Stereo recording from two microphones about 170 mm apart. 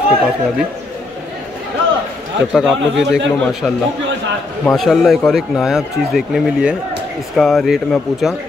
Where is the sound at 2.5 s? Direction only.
Centre (ahead or behind).